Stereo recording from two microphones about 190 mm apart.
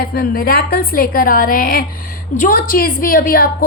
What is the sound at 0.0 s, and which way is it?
A woman's voice, 50° left (ahead or behind).